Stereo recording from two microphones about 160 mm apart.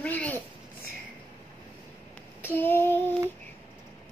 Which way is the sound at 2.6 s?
15° left (ahead or behind).